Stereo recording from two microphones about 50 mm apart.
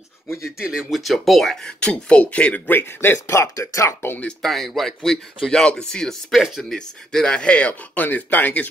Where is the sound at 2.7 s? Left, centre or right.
Left.